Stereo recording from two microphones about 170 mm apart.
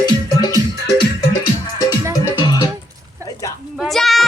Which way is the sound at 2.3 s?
25° left (ahead or behind).